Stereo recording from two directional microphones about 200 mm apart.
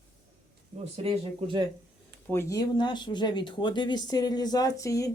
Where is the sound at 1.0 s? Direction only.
30° right (ahead or behind).